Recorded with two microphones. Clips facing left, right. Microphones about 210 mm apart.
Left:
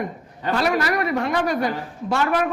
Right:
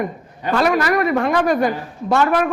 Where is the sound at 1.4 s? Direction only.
50° right (ahead or behind).